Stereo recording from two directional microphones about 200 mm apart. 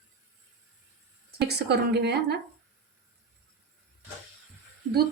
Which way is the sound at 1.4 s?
55° right (ahead or behind).